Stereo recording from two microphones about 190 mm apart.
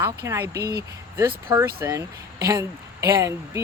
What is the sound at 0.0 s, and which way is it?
Speech, 10° right (ahead or behind).